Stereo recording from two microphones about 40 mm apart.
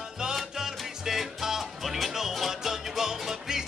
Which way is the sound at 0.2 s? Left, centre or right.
Centre.